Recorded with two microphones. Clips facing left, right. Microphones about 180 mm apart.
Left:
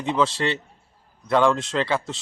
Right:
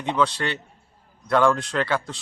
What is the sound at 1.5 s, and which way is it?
Speech, 25° left (ahead or behind).